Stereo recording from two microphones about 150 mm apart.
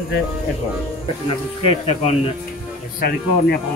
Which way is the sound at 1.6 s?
40° left (ahead or behind).